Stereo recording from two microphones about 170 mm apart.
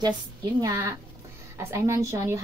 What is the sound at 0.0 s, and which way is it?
A woman's voice, 25° right (ahead or behind).